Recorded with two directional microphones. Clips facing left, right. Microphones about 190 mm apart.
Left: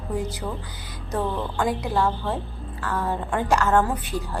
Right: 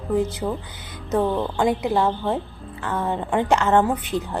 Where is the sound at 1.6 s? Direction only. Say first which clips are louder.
Right 3 dB; 20° right (ahead or behind).